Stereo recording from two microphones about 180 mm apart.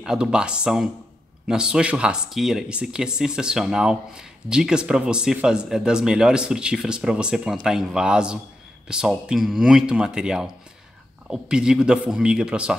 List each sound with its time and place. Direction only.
0.0 s speech: 5° right (ahead or behind)